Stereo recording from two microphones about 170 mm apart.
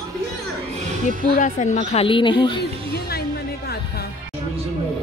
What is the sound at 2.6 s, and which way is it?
Music, 70° left (ahead or behind).